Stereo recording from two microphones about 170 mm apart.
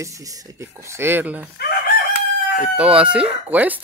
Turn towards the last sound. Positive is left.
turn(degrees=-10)  # may be behind; listen again after turning